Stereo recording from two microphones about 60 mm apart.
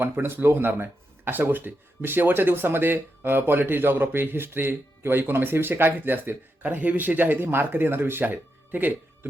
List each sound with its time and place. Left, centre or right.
0.0 s speech: right